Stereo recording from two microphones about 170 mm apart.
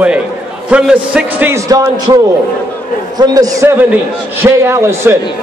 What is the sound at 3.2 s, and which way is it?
A man's voice, 20° right (ahead or behind).